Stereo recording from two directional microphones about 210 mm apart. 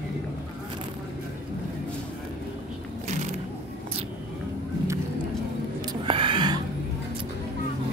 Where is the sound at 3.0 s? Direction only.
35° right (ahead or behind).